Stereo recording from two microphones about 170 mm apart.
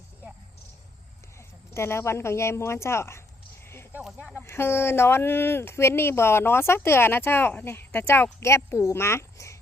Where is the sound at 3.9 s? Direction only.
5° right (ahead or behind).